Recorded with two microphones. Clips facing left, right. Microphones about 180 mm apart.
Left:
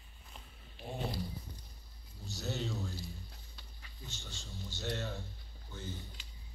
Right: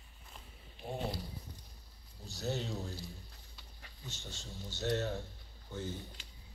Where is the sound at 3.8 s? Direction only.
40° right (ahead or behind).